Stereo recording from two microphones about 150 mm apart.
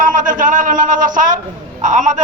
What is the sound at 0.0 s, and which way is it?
A man's voice, 60° right (ahead or behind).